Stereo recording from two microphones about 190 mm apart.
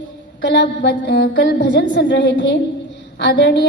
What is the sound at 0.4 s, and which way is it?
A woman's voice, 65° left (ahead or behind).